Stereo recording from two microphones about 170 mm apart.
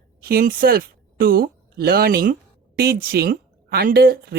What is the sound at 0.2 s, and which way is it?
A woman's voice, 60° right (ahead or behind).